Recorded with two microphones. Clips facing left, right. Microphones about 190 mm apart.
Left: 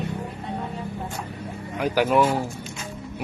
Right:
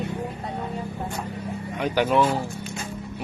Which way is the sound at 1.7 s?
5° left (ahead or behind).